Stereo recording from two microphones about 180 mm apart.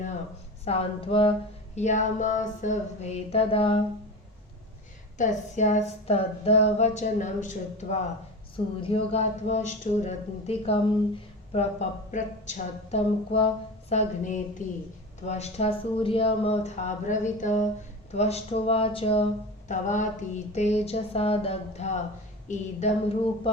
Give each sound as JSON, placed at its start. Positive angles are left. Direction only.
{"t": 0.6, "sound": "speech", "side_deg": 35}
{"t": 1.7, "sound": "speech", "side_deg": 40}
{"t": 5.1, "sound": "speech", "side_deg": 45}